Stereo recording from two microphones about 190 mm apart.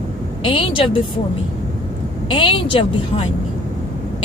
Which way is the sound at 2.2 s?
25° left (ahead or behind).